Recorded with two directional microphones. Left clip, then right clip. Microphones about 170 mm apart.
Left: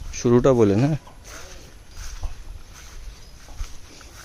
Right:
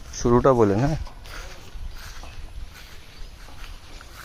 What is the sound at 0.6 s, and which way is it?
Speech, 60° left (ahead or behind).